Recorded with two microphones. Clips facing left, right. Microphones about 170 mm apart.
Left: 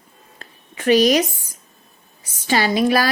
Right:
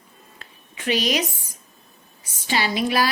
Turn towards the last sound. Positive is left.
turn(degrees=45)  # may be behind; listen again after turning